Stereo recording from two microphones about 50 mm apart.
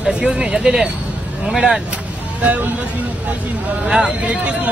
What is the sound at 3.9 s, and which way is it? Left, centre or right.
Speech, centre.